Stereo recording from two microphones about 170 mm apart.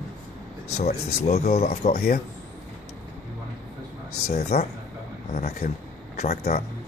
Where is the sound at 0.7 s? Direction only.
40° left (ahead or behind).